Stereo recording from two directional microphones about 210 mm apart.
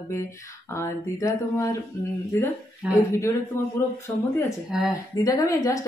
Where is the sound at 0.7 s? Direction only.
15° left (ahead or behind).